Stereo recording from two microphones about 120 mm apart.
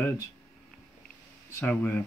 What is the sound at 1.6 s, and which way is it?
Speech, 15° left (ahead or behind).